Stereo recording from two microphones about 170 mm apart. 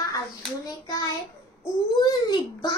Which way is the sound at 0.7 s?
20° left (ahead or behind).